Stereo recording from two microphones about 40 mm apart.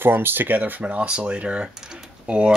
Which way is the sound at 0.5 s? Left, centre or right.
Right.